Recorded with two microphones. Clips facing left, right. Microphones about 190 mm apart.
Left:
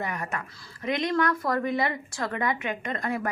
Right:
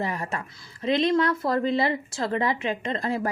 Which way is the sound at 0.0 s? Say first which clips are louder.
Right 3 dB; 30° right (ahead or behind).